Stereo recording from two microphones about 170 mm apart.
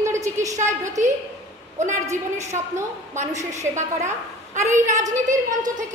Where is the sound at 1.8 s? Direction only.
45° right (ahead or behind).